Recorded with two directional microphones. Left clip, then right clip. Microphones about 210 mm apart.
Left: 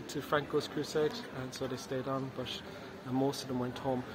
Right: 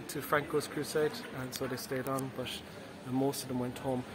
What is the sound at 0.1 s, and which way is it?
A man's voice, centre (ahead or behind).